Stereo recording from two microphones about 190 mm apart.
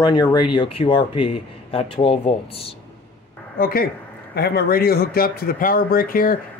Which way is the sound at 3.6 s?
50° left (ahead or behind).